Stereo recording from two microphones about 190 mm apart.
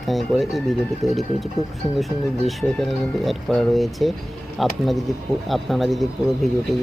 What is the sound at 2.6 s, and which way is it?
Speech, centre (ahead or behind).